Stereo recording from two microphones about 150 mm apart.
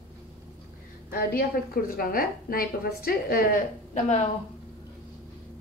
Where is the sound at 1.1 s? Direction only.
80° left.